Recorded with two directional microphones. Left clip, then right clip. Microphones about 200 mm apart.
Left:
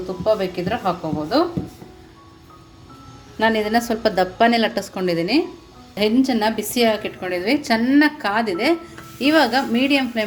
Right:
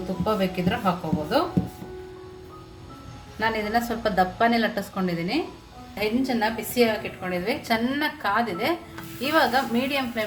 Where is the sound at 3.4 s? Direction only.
45° left (ahead or behind).